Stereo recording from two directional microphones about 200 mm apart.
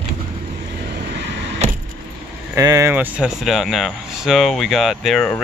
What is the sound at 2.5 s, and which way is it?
Speech, 15° right (ahead or behind).